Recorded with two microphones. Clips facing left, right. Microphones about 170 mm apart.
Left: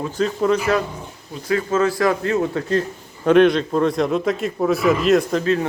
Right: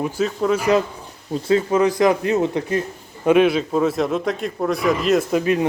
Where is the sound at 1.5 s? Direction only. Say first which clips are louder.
Right 2 dB; 20° right (ahead or behind); by 5.4 s centre (ahead or behind).